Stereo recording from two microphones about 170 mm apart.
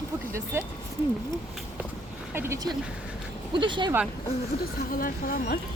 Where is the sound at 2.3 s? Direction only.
15° right (ahead or behind).